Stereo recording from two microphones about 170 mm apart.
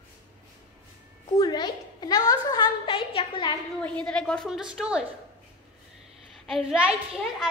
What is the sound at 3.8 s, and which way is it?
A woman's voice, 5° left (ahead or behind).